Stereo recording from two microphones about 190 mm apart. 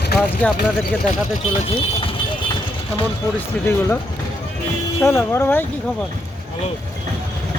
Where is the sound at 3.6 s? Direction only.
15° left (ahead or behind).